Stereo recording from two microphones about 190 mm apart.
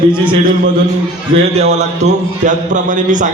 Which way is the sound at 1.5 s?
35° right (ahead or behind).